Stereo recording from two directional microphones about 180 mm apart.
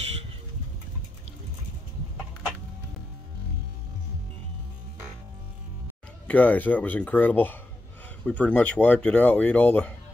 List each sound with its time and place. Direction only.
6.2 s speech: 10° left (ahead or behind)